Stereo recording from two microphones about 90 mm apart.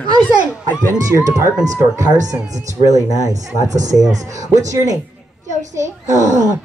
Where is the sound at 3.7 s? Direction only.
40° right (ahead or behind).